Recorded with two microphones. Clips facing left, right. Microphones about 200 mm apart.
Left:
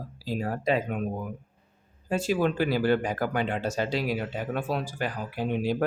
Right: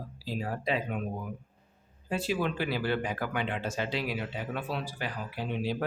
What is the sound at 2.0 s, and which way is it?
Speech, 45° left (ahead or behind).